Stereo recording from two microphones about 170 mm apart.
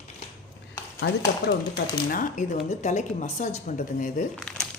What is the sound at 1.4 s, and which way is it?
Speech, 70° left (ahead or behind).